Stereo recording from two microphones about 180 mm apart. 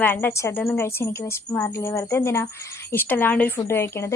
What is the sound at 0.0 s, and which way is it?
A woman's voice, 10° left (ahead or behind).